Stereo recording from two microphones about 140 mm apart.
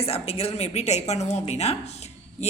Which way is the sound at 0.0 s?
45° left (ahead or behind).